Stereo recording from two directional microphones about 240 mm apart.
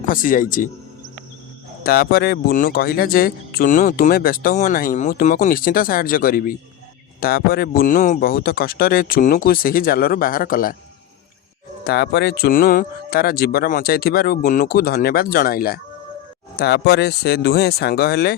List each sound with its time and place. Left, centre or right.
0.1 s speech: left
1.8 s speech: left
11.9 s speech: left